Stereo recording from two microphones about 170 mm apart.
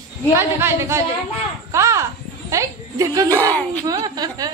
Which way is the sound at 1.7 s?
15° right (ahead or behind).